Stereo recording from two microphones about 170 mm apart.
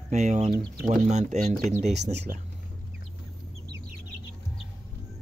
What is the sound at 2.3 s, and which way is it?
Speech, 55° right (ahead or behind).